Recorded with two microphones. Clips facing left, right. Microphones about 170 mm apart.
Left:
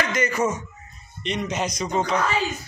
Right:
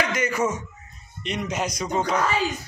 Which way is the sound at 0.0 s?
5° right (ahead or behind).